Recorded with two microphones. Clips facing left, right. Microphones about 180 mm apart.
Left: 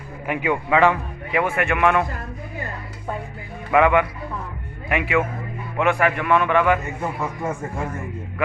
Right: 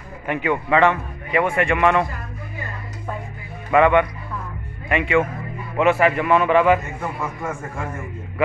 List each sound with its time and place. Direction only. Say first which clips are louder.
0.3 s a man's voice: right 1 dB; 10° left (ahead or behind)
3.7 s a man's voice: right 1 dB; 5° left (ahead or behind)
7.0 s a man's voice: left 1 dB; 20° left (ahead or behind)